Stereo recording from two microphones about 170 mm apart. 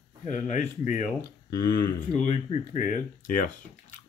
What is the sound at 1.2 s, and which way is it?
Speech, 65° left (ahead or behind).